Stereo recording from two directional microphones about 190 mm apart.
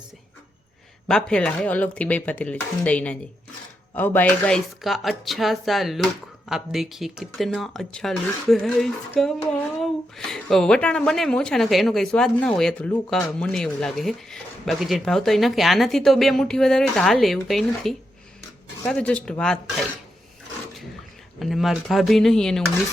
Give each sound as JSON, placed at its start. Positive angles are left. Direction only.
{"t": 1.0, "sound": "speech", "side_deg": 5}
{"t": 21.3, "sound": "speech", "side_deg": 0}